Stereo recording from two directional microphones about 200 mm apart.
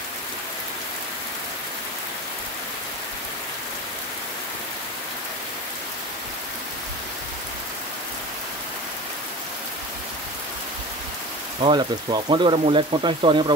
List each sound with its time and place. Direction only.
11.6 s speech: 25° right (ahead or behind)